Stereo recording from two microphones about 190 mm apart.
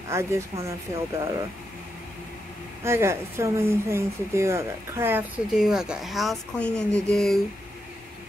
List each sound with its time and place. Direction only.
0.1 s speech: 15° right (ahead or behind)
2.8 s speech: 15° right (ahead or behind); by 7.3 s 5° left (ahead or behind)